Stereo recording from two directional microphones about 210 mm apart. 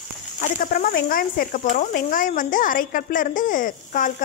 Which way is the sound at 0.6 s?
40° left (ahead or behind).